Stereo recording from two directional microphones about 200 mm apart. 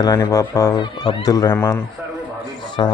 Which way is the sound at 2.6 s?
20° left (ahead or behind).